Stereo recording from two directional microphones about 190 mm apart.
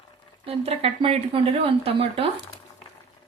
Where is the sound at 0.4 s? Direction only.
30° right (ahead or behind).